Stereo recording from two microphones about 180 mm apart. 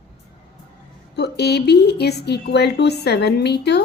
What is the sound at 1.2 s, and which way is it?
A woman's voice, 65° left (ahead or behind).